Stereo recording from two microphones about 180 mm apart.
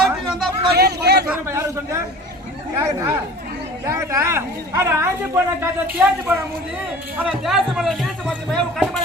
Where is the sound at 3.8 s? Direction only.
15° right (ahead or behind); by 9.0 s centre (ahead or behind).